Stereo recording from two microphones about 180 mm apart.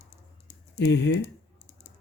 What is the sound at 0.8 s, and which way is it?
Speech, 70° left (ahead or behind).